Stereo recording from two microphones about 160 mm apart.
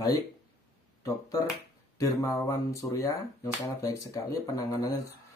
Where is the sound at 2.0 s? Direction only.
20° left (ahead or behind).